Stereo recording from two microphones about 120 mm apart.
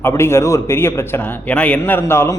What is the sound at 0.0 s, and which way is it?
A man's voice, 20° left (ahead or behind).